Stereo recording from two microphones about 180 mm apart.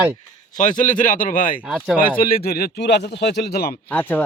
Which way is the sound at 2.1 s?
55° left (ahead or behind).